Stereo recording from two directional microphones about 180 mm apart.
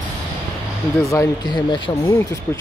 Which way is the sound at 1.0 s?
20° left (ahead or behind).